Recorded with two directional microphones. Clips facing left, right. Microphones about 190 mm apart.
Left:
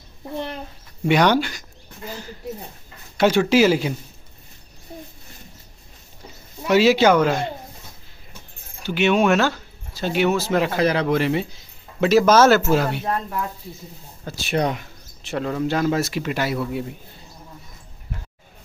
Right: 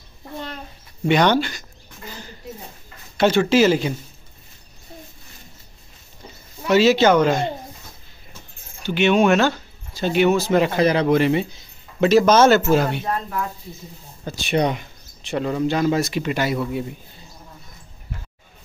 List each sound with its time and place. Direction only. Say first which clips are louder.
0.2 s a sound: left 4 dB; 20° left (ahead or behind)
1.0 s speech: even; 10° left (ahead or behind)
3.2 s speech: even; 10° left (ahead or behind)
6.6 s speech: even; 10° left (ahead or behind)
8.8 s speech: right 1 dB; 5° left (ahead or behind)
14.2 s speech: right 2 dB; centre (ahead or behind)